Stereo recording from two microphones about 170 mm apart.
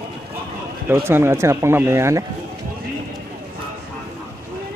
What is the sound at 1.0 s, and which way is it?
Speech, 15° right (ahead or behind).